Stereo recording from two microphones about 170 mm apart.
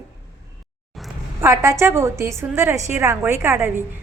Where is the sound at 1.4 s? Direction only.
20° right (ahead or behind).